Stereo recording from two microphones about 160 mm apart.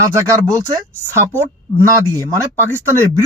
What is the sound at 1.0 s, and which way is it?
Speech, 15° right (ahead or behind).